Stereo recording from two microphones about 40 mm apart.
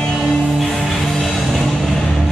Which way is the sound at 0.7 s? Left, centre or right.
Centre.